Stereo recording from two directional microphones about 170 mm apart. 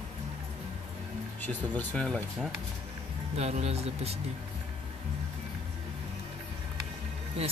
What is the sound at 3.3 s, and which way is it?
Speech, 40° right (ahead or behind).